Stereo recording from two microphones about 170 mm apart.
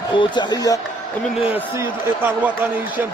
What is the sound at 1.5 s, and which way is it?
Speech, 10° right (ahead or behind).